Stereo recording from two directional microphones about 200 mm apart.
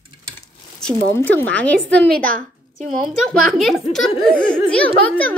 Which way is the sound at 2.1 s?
40° right (ahead or behind).